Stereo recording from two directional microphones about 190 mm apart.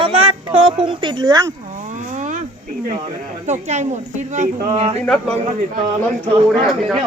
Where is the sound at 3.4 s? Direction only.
35° right (ahead or behind).